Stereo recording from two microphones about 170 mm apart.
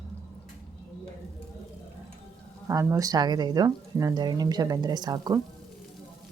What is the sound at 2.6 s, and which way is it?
Speech, 20° right (ahead or behind).